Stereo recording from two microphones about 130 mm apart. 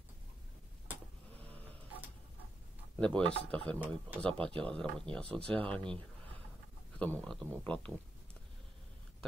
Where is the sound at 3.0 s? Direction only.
10° left (ahead or behind).